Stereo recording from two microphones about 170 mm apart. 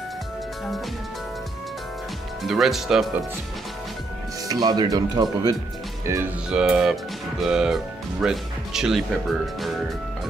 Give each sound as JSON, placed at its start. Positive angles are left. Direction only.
{"t": 2.4, "sound": "speech", "side_deg": 0}
{"t": 4.5, "sound": "speech", "side_deg": -25}
{"t": 6.5, "sound": "speech", "side_deg": -5}